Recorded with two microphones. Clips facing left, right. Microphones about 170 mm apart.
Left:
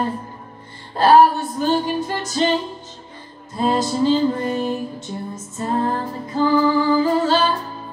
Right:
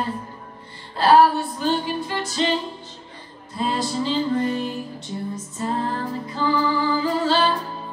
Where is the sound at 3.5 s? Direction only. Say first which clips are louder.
Left 5 dB; 45° left (ahead or behind).